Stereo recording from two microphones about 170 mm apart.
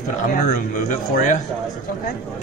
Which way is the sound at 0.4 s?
55° left (ahead or behind).